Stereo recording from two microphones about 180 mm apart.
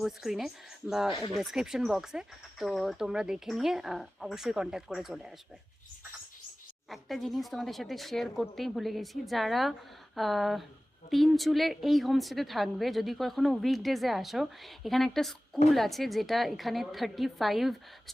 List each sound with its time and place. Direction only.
0.0 s a woman's voice: centre (ahead or behind)
6.9 s a woman's voice: centre (ahead or behind)